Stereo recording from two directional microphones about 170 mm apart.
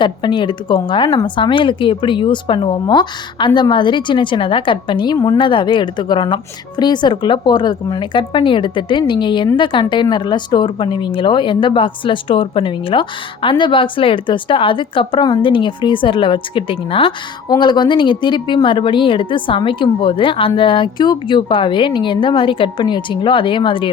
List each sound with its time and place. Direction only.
0.0 s speech: 25° left (ahead or behind)